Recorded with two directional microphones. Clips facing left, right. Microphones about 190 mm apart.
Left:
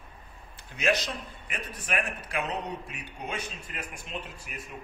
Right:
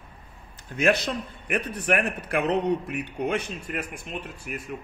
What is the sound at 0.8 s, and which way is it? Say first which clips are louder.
A man's voice: right 5 dB; 55° right (ahead or behind).